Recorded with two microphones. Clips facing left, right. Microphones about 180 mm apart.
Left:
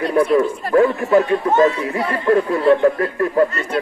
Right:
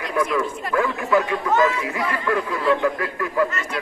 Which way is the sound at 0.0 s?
35° left (ahead or behind).